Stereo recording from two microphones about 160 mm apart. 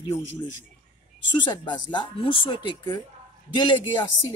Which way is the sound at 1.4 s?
30° left (ahead or behind).